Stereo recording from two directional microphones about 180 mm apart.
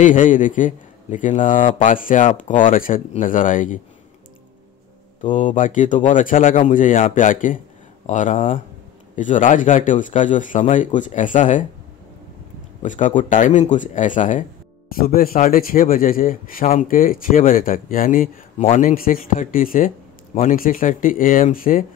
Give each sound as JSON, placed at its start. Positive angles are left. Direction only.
{"t": 0.0, "sound": "a man's voice", "side_deg": 45}
{"t": 5.2, "sound": "a man's voice", "side_deg": 45}
{"t": 12.8, "sound": "a man's voice", "side_deg": 45}